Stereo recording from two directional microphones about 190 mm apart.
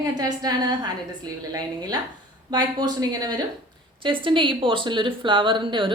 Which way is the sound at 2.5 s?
20° right (ahead or behind).